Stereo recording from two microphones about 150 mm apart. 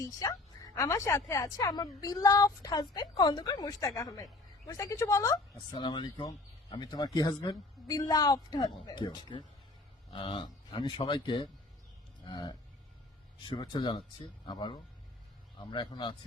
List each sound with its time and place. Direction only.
0.0 s a woman's voice: 25° left (ahead or behind)